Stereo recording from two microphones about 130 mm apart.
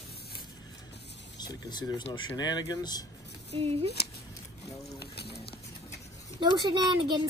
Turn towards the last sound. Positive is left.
turn(degrees=-35)  # may be behind; listen again after turning